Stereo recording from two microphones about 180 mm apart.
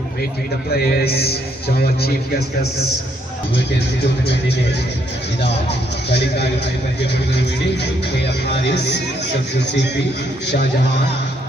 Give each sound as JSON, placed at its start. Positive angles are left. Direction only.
{"t": 0.8, "sound": "a man's voice", "side_deg": 60}
{"t": 4.0, "sound": "speech", "side_deg": 70}